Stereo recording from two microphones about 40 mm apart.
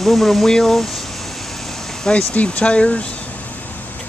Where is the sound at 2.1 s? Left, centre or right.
Left.